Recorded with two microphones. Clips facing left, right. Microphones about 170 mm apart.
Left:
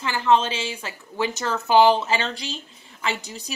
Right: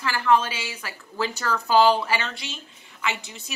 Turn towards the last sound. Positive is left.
turn(degrees=35)  # may be behind; listen again after turning